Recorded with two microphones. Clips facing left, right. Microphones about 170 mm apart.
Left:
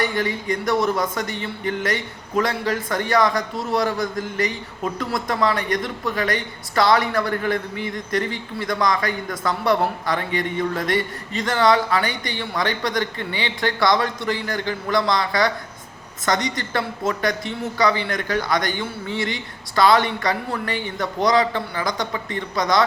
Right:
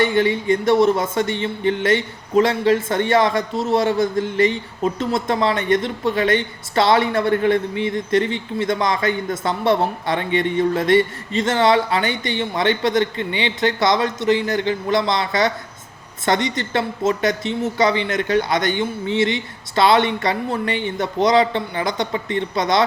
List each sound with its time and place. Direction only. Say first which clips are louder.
0.0 s speech: right 6 dB; 25° right (ahead or behind)
16.6 s speech: right 3 dB; 25° right (ahead or behind)